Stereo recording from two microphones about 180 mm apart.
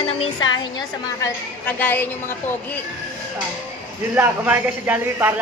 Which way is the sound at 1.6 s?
10° left (ahead or behind).